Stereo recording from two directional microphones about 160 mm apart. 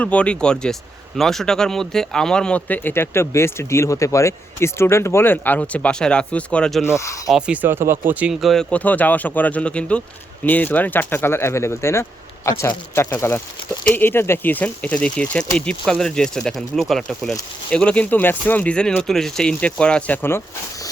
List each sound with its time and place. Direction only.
0.0 s speech: 10° left (ahead or behind)
6.8 s speech: 15° left (ahead or behind)
7.3 s speech: 5° right (ahead or behind); by 20.4 s 10° left (ahead or behind)